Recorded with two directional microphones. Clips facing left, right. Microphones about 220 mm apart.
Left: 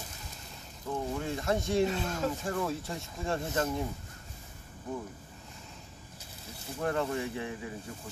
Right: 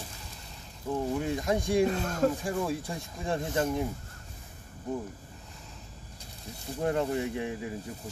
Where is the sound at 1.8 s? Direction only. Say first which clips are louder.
Right 5 dB; 45° right (ahead or behind).